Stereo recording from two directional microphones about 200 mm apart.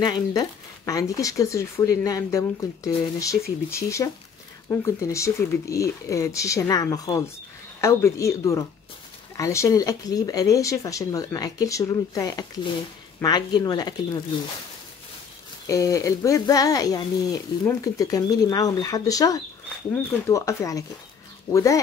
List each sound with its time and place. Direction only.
0.0 s speech: 20° left (ahead or behind)
15.6 s speech: 15° left (ahead or behind)